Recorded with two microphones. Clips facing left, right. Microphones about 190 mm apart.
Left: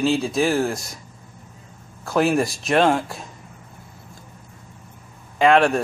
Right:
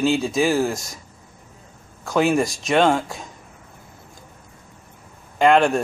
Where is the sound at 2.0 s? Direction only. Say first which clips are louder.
Even; centre (ahead or behind).